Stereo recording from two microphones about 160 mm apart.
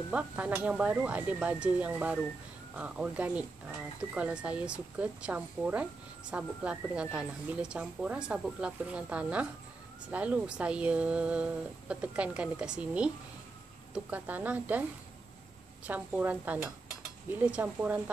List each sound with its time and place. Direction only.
0.1 s speech: 10° right (ahead or behind)
15.9 s speech: 10° right (ahead or behind)